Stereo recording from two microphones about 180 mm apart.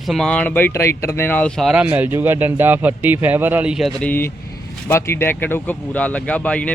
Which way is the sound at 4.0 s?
10° left (ahead or behind).